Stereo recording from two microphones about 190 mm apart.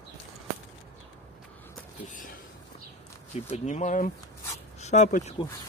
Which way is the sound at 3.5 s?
35° left (ahead or behind).